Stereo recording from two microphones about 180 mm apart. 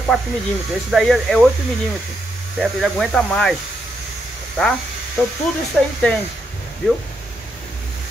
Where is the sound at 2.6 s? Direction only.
Centre (ahead or behind).